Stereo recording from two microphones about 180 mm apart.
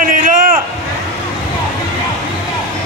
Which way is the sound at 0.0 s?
50° right (ahead or behind).